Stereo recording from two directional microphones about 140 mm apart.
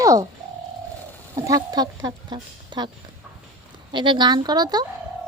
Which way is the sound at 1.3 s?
25° right (ahead or behind).